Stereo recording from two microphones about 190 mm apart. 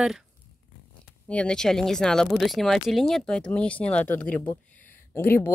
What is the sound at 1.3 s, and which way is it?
Speech, 5° left (ahead or behind).